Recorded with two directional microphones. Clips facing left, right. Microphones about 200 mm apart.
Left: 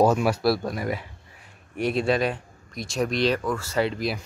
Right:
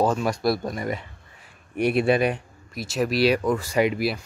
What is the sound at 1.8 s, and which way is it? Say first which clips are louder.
Speech: right 3 dB; 15° right (ahead or behind).